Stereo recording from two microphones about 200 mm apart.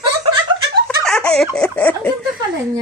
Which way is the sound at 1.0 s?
5° left (ahead or behind).